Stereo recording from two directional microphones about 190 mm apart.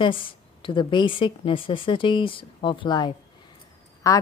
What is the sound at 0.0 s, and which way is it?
Speech, 25° left (ahead or behind).